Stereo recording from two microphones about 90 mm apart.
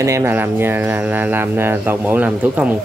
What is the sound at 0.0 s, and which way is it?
Speech, 35° right (ahead or behind).